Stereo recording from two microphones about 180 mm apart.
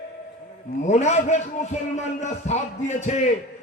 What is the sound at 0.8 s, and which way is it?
A man's voice, 40° left (ahead or behind).